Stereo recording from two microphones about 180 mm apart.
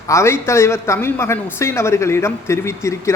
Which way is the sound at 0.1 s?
15° left (ahead or behind).